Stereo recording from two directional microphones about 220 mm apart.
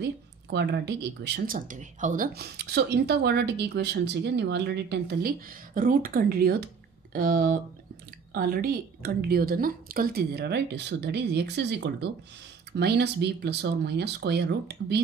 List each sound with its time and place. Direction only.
0.0 s speech: 50° right (ahead or behind)